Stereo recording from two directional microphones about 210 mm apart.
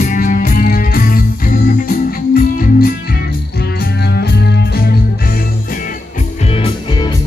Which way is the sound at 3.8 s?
50° left (ahead or behind).